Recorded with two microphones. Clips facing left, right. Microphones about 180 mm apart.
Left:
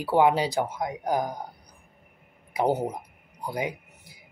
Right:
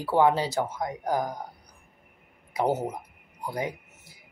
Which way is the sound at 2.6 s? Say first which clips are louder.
Left 1 dB; 15° left (ahead or behind).